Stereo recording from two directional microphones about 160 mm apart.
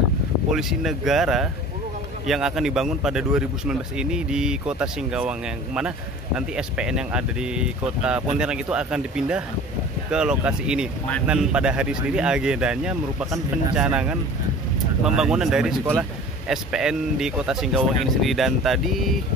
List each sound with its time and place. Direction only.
0.5 s speech: centre (ahead or behind)
15.8 s speech: 15° right (ahead or behind)
16.4 s speech: 5° right (ahead or behind)